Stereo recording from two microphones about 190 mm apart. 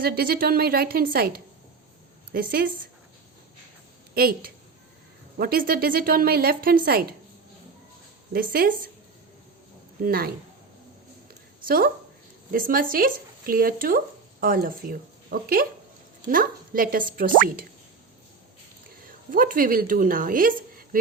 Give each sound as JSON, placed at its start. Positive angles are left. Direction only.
{"t": 0.0, "sound": "a woman's voice", "side_deg": -50}
{"t": 4.1, "sound": "a woman's voice", "side_deg": -50}
{"t": 8.3, "sound": "a woman's voice", "side_deg": -50}
{"t": 10.0, "sound": "a woman's voice", "side_deg": -50}
{"t": 11.6, "sound": "a woman's voice", "side_deg": -50}
{"t": 19.0, "sound": "a woman's voice", "side_deg": -45}